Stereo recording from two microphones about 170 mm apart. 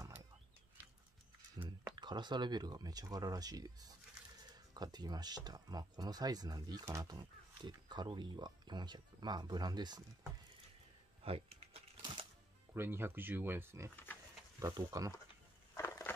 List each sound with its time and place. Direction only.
2.0 s speech: 25° right (ahead or behind)
11.2 s typewriter: 35° right (ahead or behind)
12.7 s speech: 15° right (ahead or behind)
15.7 s a sound: 15° left (ahead or behind)